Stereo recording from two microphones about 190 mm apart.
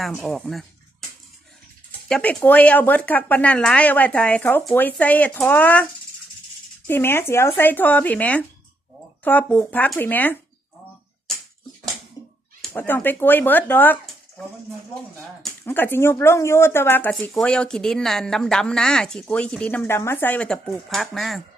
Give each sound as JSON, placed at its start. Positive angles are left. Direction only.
{"t": 0.0, "sound": "speech", "side_deg": 0}
{"t": 2.0, "sound": "speech", "side_deg": 5}
{"t": 12.2, "sound": "dog", "side_deg": 20}
{"t": 12.6, "sound": "speech", "side_deg": 10}
{"t": 15.6, "sound": "speech", "side_deg": 10}